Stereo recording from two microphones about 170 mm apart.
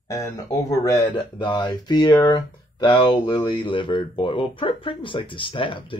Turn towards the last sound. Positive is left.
turn(degrees=30)  # may be behind; listen again after turning